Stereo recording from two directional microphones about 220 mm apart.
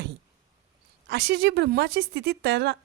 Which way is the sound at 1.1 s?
50° right (ahead or behind).